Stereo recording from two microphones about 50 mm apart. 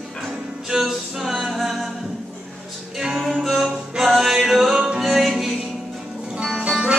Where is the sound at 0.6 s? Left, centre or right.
Centre.